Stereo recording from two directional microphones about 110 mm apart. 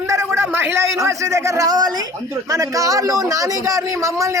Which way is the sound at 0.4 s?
20° right (ahead or behind).